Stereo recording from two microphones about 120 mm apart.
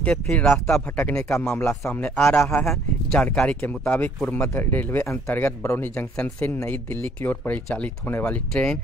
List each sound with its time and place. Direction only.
0.0 s speech: 10° left (ahead or behind)
2.6 s speech: 5° left (ahead or behind)